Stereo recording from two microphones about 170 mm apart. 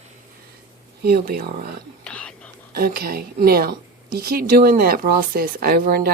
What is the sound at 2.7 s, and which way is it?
Speech, 60° right (ahead or behind).